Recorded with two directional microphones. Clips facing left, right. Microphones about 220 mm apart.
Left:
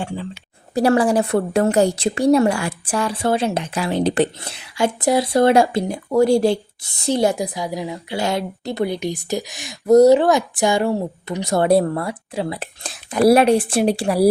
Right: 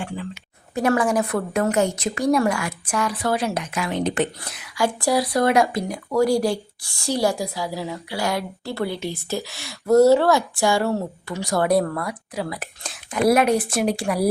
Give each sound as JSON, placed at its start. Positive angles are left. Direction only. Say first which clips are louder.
{"t": 0.7, "sound": "a woman's voice", "louder": "left 4 dB", "side_deg": 35}